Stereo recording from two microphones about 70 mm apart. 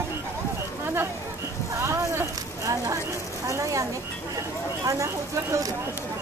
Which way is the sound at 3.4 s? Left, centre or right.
Right.